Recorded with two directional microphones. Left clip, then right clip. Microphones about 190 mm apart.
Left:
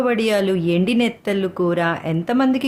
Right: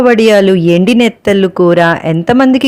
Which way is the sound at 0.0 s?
40° right (ahead or behind).